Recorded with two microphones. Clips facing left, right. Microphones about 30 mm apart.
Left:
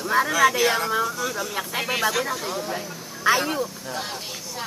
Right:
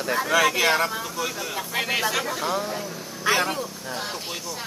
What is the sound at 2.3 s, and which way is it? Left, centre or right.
Speech, centre.